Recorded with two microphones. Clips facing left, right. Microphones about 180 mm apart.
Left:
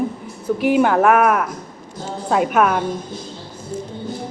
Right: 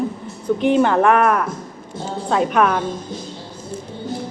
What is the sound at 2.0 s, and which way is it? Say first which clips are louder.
Speech: right 1 dB; 25° right (ahead or behind).